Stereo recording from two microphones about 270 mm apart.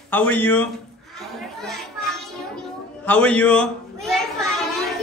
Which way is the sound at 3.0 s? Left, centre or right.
Centre.